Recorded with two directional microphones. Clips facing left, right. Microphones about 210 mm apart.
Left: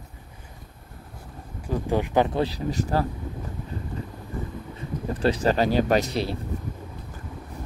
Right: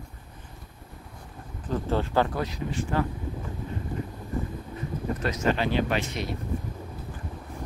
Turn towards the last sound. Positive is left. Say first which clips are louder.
# left 6 dB
turn(degrees=35)  # may be behind; listen again after turning